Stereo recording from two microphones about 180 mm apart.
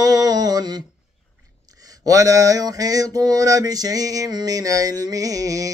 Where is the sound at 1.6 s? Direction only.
20° right (ahead or behind).